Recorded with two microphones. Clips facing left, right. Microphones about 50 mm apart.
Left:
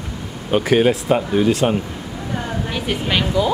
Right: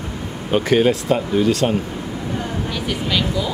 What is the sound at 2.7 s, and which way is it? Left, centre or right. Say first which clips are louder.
Speech: left 2 dB; left.